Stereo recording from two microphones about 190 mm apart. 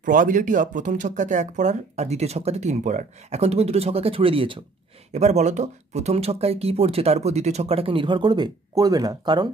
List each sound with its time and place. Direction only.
0.0 s speech: 45° right (ahead or behind); by 9.5 s 20° right (ahead or behind)